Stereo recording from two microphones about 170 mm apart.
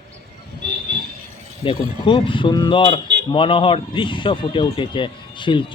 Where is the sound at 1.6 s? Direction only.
30° left (ahead or behind).